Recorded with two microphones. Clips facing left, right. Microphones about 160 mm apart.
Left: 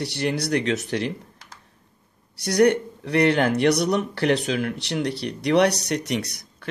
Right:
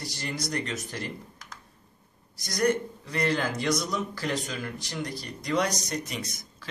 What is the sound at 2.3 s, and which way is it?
Speech, 70° left (ahead or behind).